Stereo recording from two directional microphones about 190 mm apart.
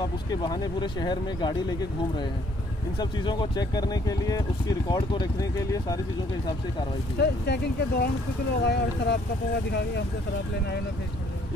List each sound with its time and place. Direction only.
0.0 s speech: 20° left (ahead or behind)
3.0 s speech: 25° left (ahead or behind)
7.2 s speech: 60° left (ahead or behind)